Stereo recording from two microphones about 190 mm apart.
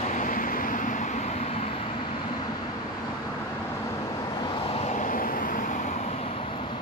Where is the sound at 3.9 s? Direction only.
20° left (ahead or behind).